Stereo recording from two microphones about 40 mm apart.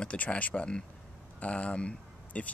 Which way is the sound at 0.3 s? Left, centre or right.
Left.